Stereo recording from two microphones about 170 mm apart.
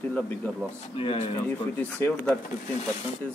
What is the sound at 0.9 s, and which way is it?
Speech, 35° left (ahead or behind).